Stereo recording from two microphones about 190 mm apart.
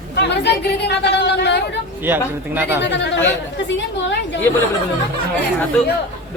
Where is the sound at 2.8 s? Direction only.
65° left (ahead or behind).